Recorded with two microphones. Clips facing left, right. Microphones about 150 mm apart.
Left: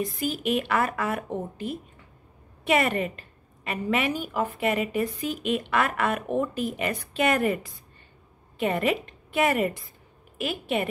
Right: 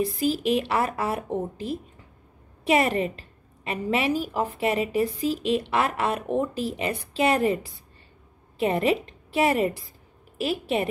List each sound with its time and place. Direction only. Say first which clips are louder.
0.0 s a woman's voice: right 4 dB; 30° right (ahead or behind)
2.6 s a woman's voice: right 2 dB; 30° right (ahead or behind)